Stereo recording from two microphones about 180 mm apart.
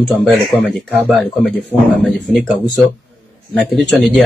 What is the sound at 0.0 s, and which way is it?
Speech, centre (ahead or behind).